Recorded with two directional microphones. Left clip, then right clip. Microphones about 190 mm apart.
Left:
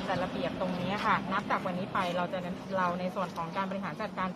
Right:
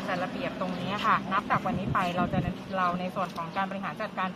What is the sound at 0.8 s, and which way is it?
Speech, 45° left (ahead or behind).